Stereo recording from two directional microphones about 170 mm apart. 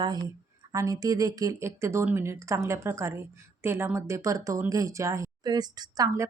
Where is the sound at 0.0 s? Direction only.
25° right (ahead or behind).